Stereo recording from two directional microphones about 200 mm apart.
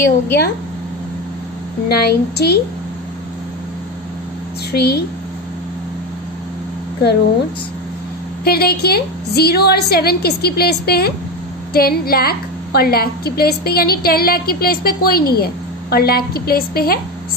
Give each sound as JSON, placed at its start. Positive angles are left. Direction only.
{"t": 0.0, "sound": "a woman's voice", "side_deg": 50}
{"t": 1.9, "sound": "a woman's voice", "side_deg": 55}
{"t": 4.7, "sound": "a woman's voice", "side_deg": 55}
{"t": 8.5, "sound": "a woman's voice", "side_deg": 50}